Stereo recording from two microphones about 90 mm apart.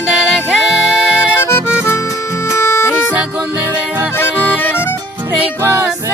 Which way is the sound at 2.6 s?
35° left (ahead or behind).